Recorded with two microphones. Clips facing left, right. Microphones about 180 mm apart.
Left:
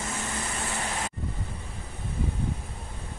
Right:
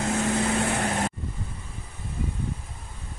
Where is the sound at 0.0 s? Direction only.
75° right (ahead or behind).